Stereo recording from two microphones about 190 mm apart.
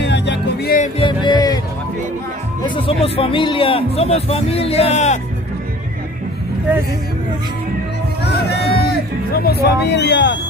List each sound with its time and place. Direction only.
0.0 s music: 65° left (ahead or behind)
0.9 s music: 25° left (ahead or behind)
2.7 s a man's voice: 30° left (ahead or behind)
8.2 s music: 60° left (ahead or behind)